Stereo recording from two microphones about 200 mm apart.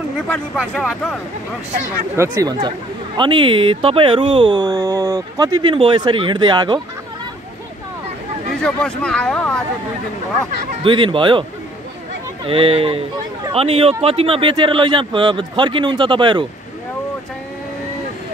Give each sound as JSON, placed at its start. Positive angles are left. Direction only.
{"t": 2.1, "sound": "speech", "side_deg": -15}
{"t": 3.2, "sound": "speech", "side_deg": -25}
{"t": 8.6, "sound": "speech", "side_deg": 5}
{"t": 10.8, "sound": "speech", "side_deg": -25}
{"t": 12.4, "sound": "speech", "side_deg": -25}